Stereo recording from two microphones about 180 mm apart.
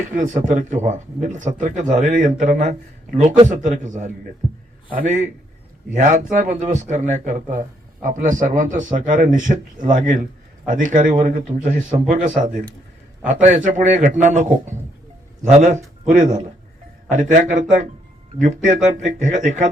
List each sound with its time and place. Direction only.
0.1 s speech: 45° right (ahead or behind)
13.2 s speech: 45° right (ahead or behind)